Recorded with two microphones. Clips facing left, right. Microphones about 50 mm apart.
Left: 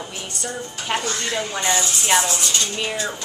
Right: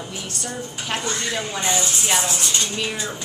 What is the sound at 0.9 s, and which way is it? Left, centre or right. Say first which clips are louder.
Speech: left 3 dB; centre.